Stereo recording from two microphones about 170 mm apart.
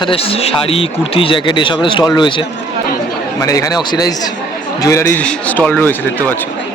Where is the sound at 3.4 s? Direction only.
20° left (ahead or behind).